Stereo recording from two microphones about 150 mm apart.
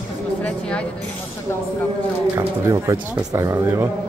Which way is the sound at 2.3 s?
20° right (ahead or behind).